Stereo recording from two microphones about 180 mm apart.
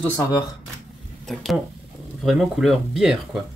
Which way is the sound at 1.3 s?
Centre (ahead or behind).